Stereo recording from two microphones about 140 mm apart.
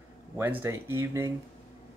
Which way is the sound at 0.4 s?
15° right (ahead or behind).